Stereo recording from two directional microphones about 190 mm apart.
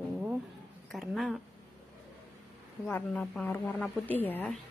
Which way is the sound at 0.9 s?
Centre (ahead or behind).